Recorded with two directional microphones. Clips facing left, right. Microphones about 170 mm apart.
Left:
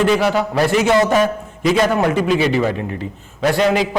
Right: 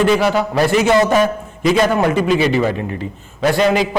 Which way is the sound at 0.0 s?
10° right (ahead or behind).